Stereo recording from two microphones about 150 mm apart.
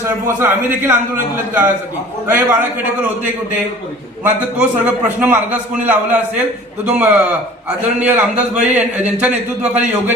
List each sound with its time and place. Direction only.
0.3 s a man's voice: 15° right (ahead or behind)
2.2 s a man's voice: 15° right (ahead or behind)
4.2 s a man's voice: 10° right (ahead or behind)